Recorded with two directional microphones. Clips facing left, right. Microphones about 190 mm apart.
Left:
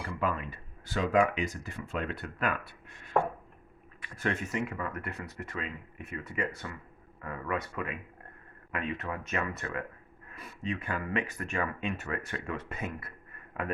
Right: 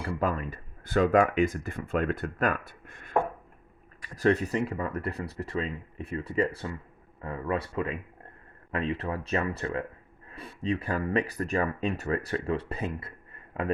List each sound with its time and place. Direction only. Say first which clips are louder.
0.2 s speech: right 1 dB; 40° right (ahead or behind)
4.0 s speech: right 9 dB; 35° right (ahead or behind)